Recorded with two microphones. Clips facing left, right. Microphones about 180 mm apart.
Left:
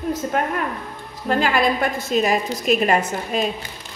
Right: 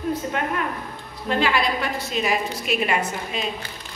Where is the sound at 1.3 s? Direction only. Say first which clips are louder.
Left 3 dB; 45° left (ahead or behind).